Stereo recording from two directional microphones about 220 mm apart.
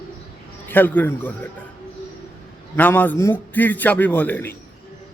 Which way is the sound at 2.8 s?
5° left (ahead or behind).